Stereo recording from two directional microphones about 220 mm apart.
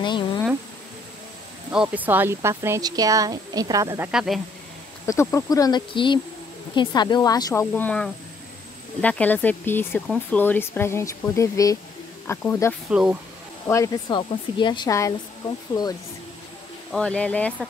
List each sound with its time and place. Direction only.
0.0 s insect: 20° left (ahead or behind)
1.7 s speech: 5° right (ahead or behind)
4.1 s speech: 5° right (ahead or behind)
5.0 s speech: 15° left (ahead or behind)
12.9 s speech: 5° right (ahead or behind)
13.7 s speech: 15° left (ahead or behind)
16.9 s speech: 5° left (ahead or behind)